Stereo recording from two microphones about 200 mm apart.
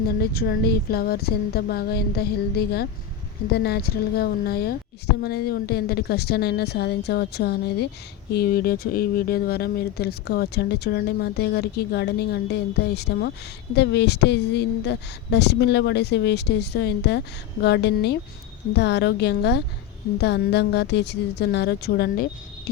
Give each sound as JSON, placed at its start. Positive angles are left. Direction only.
{"t": 0.2, "sound": "speech", "side_deg": 50}
{"t": 3.5, "sound": "a woman's voice", "side_deg": 55}